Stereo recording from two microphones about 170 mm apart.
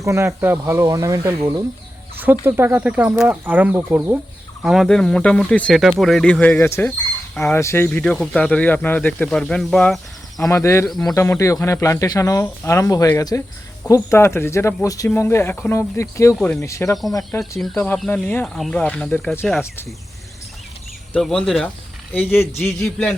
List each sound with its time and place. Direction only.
0.0 s speech: 15° right (ahead or behind); by 10.5 s centre (ahead or behind)
10.5 s speech: 15° left (ahead or behind)
16.4 s speech: 5° left (ahead or behind)
16.6 s speech: 15° left (ahead or behind)
17.6 s speech: 5° left (ahead or behind)
21.1 s speech: 5° left (ahead or behind)